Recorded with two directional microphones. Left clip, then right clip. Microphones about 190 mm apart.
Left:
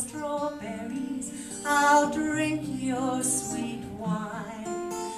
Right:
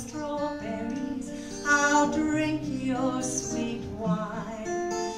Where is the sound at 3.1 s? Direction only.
Centre (ahead or behind).